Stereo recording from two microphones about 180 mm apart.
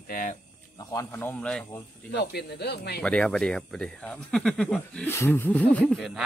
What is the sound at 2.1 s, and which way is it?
Speech, 65° left (ahead or behind).